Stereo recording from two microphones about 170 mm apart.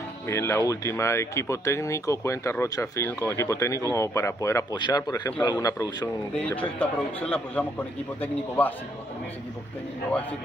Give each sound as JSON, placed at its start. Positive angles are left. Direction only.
{"t": 0.3, "sound": "speech", "side_deg": 15}
{"t": 6.4, "sound": "speech", "side_deg": 10}